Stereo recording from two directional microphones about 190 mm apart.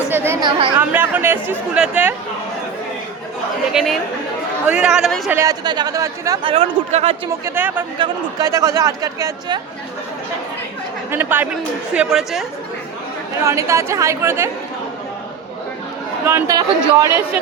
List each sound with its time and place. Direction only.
0.1 s chatter: 10° right (ahead or behind)
0.8 s speech: 10° right (ahead or behind)
3.7 s speech: centre (ahead or behind)
5.3 s speech: 15° right (ahead or behind)
7.4 s speech: 10° right (ahead or behind)
7.9 s speech: 20° right (ahead or behind)
11.1 s speech: 10° right (ahead or behind)
13.4 s speech: 15° right (ahead or behind)
16.2 s speech: 15° right (ahead or behind)